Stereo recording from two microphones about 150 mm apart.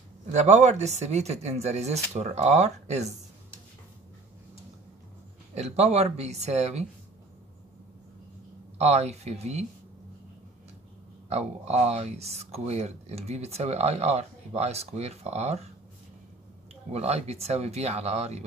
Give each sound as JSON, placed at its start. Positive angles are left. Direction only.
{"t": 0.3, "sound": "speech", "side_deg": -50}
{"t": 5.5, "sound": "speech", "side_deg": -45}
{"t": 8.7, "sound": "speech", "side_deg": -45}
{"t": 11.2, "sound": "speech", "side_deg": -45}
{"t": 16.9, "sound": "speech", "side_deg": -45}